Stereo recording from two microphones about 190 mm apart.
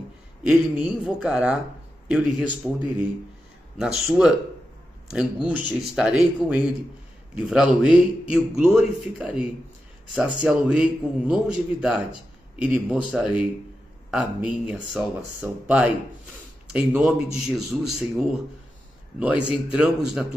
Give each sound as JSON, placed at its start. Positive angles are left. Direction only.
{"t": 0.4, "sound": "a man's voice", "side_deg": -5}
{"t": 14.7, "sound": "a man's voice", "side_deg": -5}